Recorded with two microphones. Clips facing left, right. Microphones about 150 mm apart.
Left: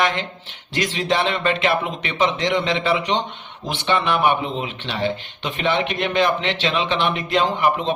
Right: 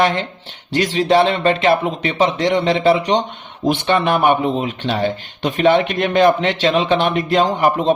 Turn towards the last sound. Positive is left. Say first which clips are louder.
# right 5 dB
turn(degrees=-40)  # may be behind; listen again after turning